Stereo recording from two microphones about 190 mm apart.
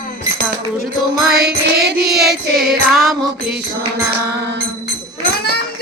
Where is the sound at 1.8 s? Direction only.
55° right (ahead or behind).